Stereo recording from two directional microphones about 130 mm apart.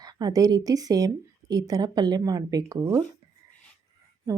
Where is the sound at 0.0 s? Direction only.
30° right (ahead or behind).